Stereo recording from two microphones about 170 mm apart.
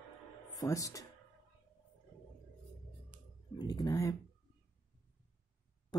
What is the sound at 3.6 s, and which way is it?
Speech, 25° left (ahead or behind).